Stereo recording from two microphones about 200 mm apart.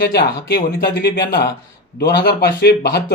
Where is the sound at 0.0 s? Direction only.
50° left (ahead or behind).